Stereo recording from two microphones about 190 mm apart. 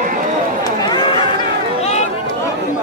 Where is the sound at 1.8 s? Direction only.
35° left (ahead or behind).